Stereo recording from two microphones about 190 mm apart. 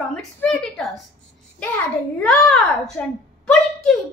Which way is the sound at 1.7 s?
5° left (ahead or behind).